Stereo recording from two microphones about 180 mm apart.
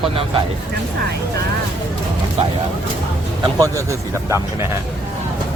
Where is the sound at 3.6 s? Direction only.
15° right (ahead or behind).